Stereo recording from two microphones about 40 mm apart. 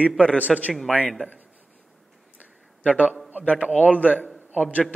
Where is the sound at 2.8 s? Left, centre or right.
Left.